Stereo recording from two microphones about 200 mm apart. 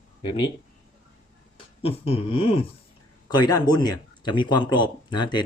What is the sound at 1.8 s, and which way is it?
Speech, 30° left (ahead or behind).